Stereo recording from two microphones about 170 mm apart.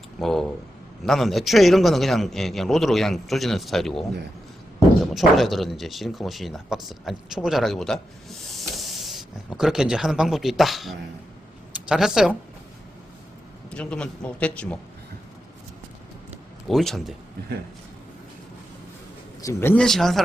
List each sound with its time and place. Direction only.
0.2 s speech: centre (ahead or behind)
13.7 s a man's voice: 5° left (ahead or behind)
16.6 s speech: centre (ahead or behind)
19.4 s a man's voice: 15° left (ahead or behind)